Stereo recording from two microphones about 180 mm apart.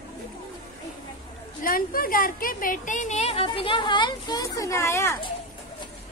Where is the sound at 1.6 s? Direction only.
55° left (ahead or behind); by 5.1 s 15° left (ahead or behind).